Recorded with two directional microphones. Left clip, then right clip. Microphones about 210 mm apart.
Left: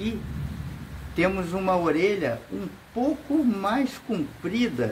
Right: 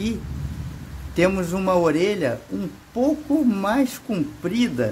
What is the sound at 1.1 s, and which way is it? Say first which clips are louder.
Speech: right 4 dB; 50° right (ahead or behind).